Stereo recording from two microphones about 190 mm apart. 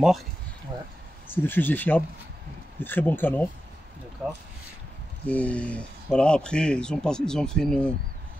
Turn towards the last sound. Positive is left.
turn(degrees=5)  # may be behind; listen again after turning